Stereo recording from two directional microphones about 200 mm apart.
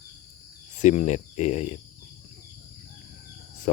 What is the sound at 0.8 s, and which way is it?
Speech, 35° left (ahead or behind).